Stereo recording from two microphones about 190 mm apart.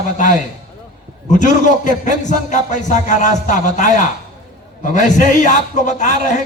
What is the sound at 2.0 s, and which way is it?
A man's voice, 40° left (ahead or behind).